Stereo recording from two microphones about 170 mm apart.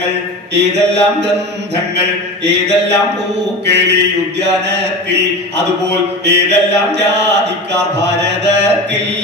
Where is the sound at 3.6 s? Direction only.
90° right.